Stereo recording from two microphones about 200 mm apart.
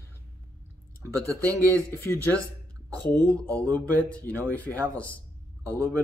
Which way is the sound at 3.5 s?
10° left (ahead or behind).